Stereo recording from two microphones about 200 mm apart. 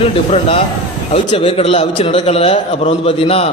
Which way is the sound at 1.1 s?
25° left (ahead or behind).